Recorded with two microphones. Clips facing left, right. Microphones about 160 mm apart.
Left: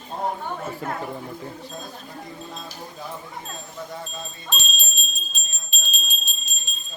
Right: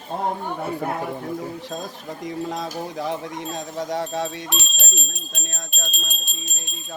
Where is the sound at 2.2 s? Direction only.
90° right.